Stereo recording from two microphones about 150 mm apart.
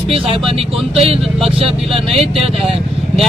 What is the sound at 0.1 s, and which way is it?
Speech, 40° right (ahead or behind).